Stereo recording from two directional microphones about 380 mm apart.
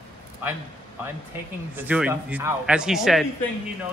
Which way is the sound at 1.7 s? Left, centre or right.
Centre.